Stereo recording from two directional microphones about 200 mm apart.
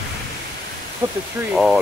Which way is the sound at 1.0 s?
20° right (ahead or behind).